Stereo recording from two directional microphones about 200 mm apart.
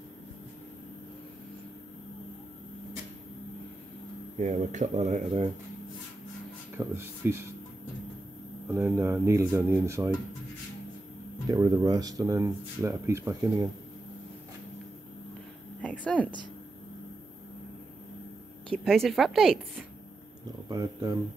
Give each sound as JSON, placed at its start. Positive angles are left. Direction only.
{"t": 4.4, "sound": "speech", "side_deg": -35}
{"t": 6.8, "sound": "speech", "side_deg": -10}
{"t": 8.6, "sound": "speech", "side_deg": -10}
{"t": 11.4, "sound": "speech", "side_deg": -20}
{"t": 15.8, "sound": "a sound", "side_deg": 5}
{"t": 18.7, "sound": "a woman's voice", "side_deg": 0}
{"t": 20.7, "sound": "speech", "side_deg": -20}